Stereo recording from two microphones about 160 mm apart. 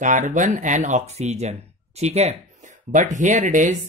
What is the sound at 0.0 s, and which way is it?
Speech, 55° right (ahead or behind).